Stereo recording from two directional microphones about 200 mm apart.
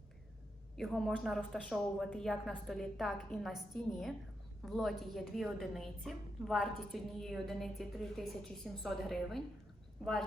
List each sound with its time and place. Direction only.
0.8 s a woman's voice: centre (ahead or behind)